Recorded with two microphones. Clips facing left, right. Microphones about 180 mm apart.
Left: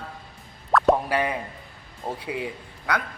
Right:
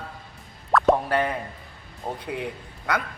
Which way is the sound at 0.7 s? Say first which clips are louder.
Even; centre (ahead or behind).